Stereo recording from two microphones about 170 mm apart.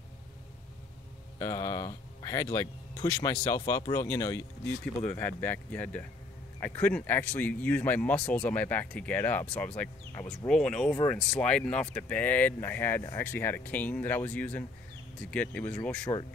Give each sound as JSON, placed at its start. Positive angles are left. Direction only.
{"t": 1.4, "sound": "speech", "side_deg": 20}